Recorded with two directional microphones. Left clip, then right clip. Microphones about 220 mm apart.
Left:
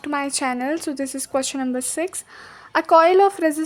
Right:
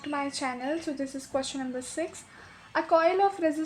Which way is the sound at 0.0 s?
40° left (ahead or behind).